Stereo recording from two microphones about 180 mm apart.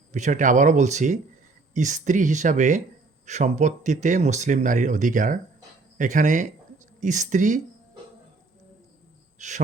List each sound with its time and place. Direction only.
0.1 s speech: 45° right (ahead or behind)
9.4 s speech: 40° right (ahead or behind)